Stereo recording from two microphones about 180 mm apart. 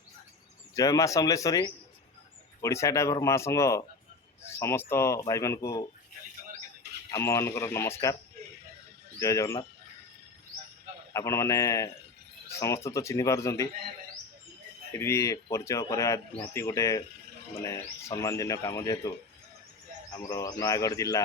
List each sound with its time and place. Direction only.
0.8 s speech: 20° left (ahead or behind)
7.1 s speech: 15° left (ahead or behind)
9.1 s speech: 15° left (ahead or behind)
11.1 s speech: 15° left (ahead or behind)
14.9 s speech: 15° left (ahead or behind)
20.2 s speech: 20° left (ahead or behind)